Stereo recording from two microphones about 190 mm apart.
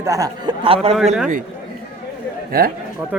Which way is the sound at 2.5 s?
50° right (ahead or behind).